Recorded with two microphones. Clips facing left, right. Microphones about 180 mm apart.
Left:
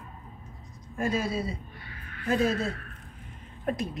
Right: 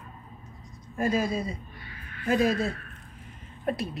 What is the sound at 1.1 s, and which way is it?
Speech, 15° right (ahead or behind).